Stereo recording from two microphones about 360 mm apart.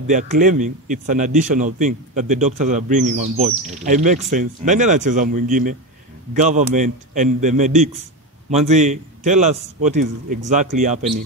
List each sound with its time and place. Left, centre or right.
0.0 s a man's voice: right